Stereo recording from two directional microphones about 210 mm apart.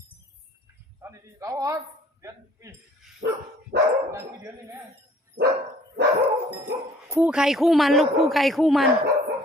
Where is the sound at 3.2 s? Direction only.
60° right (ahead or behind).